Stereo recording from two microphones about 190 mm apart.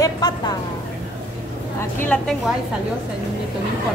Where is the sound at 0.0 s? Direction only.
20° left (ahead or behind).